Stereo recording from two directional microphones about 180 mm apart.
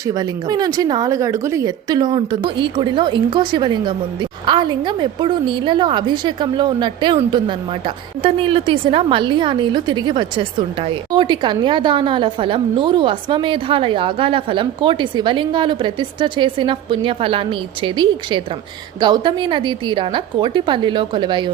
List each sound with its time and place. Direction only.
0.1 s a woman's voice: 20° right (ahead or behind)